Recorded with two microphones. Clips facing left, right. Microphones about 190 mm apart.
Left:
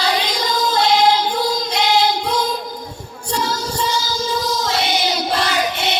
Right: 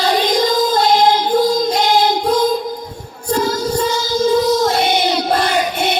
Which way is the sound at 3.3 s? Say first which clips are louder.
Right 6 dB; 50° right (ahead or behind).